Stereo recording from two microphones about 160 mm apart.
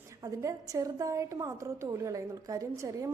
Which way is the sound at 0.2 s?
20° right (ahead or behind).